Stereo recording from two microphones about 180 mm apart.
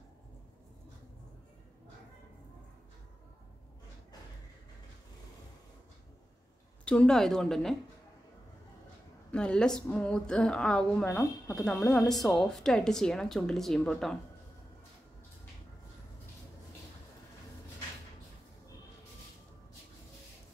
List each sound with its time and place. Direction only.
6.8 s a woman's voice: 5° left (ahead or behind)
9.3 s a woman's voice: 5° left (ahead or behind)
11.1 s speech: 15° left (ahead or behind)
11.6 s a woman's voice: 5° left (ahead or behind)